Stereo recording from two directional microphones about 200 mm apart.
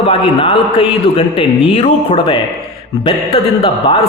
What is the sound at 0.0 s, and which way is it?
A man's voice, 25° left (ahead or behind).